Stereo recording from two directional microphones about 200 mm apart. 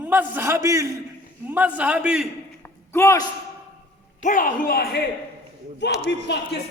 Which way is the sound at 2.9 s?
15° left (ahead or behind).